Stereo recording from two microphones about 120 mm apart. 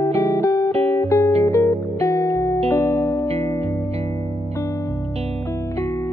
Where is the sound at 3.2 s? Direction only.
60° right (ahead or behind).